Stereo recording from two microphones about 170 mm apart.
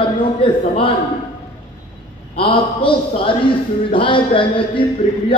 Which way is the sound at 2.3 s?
30° left (ahead or behind).